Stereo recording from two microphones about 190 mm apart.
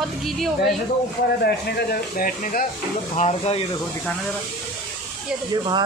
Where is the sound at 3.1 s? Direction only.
35° left (ahead or behind).